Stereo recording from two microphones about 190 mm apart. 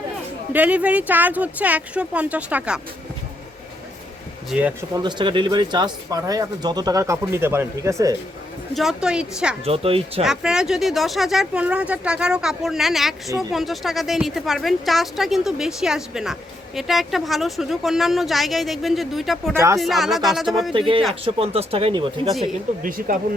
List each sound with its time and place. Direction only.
0.5 s speech: 10° right (ahead or behind)
4.5 s a woman's voice: 5° right (ahead or behind)
5.0 s speech: 25° right (ahead or behind)
8.7 s a woman's voice: centre (ahead or behind)
9.6 s speech: 30° right (ahead or behind)
10.2 s a woman's voice: 5° right (ahead or behind)
19.5 s speech: 15° right (ahead or behind)
19.8 s a woman's voice: centre (ahead or behind)
20.7 s speech: 30° right (ahead or behind)
22.8 s speech: 45° right (ahead or behind)